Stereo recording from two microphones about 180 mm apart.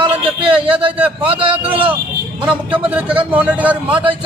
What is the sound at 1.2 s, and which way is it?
Speech, 30° right (ahead or behind).